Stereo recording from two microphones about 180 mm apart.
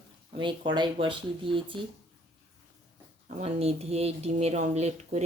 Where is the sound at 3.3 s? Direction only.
35° right (ahead or behind).